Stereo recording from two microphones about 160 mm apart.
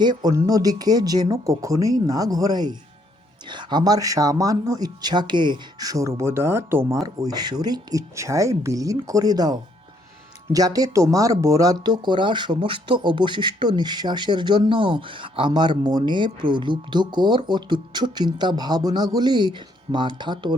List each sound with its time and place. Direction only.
0.0 s speech: 25° right (ahead or behind)
7.2 s speech: 25° right (ahead or behind)